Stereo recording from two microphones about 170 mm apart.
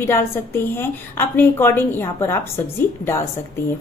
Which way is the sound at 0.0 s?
15° left (ahead or behind).